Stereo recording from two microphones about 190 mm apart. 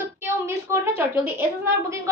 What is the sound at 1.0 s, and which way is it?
Speech, 10° right (ahead or behind).